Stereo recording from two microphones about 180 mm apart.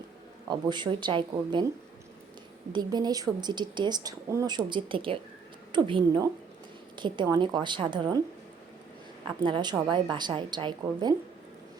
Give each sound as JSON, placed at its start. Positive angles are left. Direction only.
{"t": 0.4, "sound": "speech", "side_deg": -25}
{"t": 2.7, "sound": "speech", "side_deg": -25}
{"t": 9.4, "sound": "speech", "side_deg": -25}